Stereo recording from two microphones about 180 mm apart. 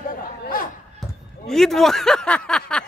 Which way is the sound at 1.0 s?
Centre (ahead or behind).